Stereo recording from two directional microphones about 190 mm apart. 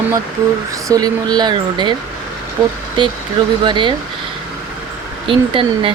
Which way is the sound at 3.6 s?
25° right (ahead or behind).